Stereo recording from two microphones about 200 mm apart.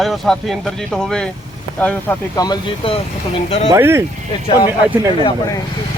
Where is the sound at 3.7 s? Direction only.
15° right (ahead or behind).